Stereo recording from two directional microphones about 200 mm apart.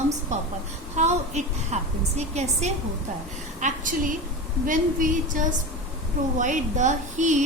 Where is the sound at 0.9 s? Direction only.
35° right (ahead or behind).